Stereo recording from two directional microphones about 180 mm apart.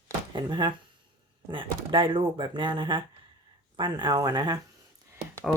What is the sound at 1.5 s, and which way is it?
Speech, 30° right (ahead or behind).